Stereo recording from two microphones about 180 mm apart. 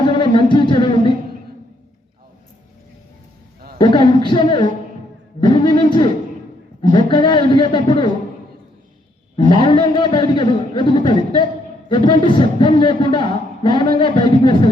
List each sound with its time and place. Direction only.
0.0 s singing: 25° left (ahead or behind)
3.8 s a man's voice: 25° left (ahead or behind)
9.5 s a man's voice: 25° left (ahead or behind)